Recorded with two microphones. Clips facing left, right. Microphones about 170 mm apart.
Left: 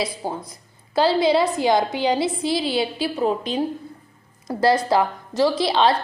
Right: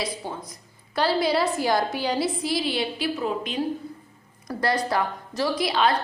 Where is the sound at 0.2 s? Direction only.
35° left (ahead or behind).